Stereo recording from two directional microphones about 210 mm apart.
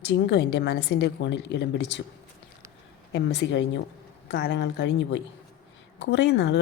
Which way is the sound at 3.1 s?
55° left (ahead or behind).